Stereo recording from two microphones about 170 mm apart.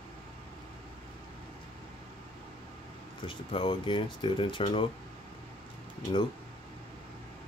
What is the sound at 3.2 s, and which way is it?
Speech, 30° left (ahead or behind).